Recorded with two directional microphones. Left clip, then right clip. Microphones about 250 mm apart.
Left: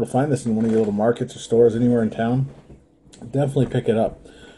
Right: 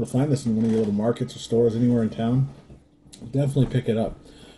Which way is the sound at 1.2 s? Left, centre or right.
Left.